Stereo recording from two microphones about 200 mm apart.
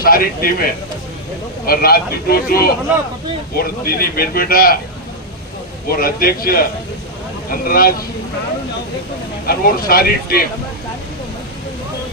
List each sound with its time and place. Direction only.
0.0 s speech: 45° left (ahead or behind)
1.7 s speech: 50° left (ahead or behind)
5.9 s speech: 45° left (ahead or behind)
9.5 s speech: 45° left (ahead or behind)